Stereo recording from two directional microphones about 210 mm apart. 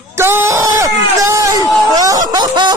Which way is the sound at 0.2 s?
10° right (ahead or behind).